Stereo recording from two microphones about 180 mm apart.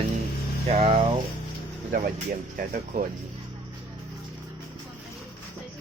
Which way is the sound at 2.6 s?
50° right (ahead or behind).